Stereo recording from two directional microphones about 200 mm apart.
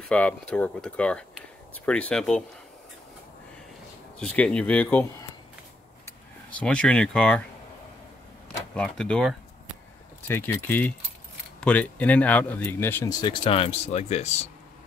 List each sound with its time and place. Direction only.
0.1 s speech: 5° left (ahead or behind)
4.2 s speech: 5° left (ahead or behind)
8.7 s speech: 5° left (ahead or behind); by 14.5 s 35° left (ahead or behind)